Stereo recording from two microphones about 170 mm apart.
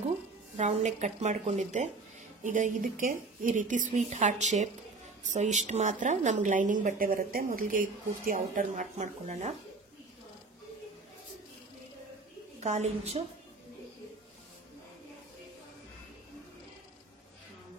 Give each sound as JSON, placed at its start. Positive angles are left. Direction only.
{"t": 0.6, "sound": "speech", "side_deg": -40}
{"t": 12.5, "sound": "a woman's voice", "side_deg": -40}